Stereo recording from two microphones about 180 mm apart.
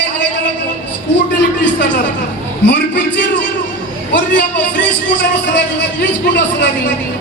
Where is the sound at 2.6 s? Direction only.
75° left (ahead or behind).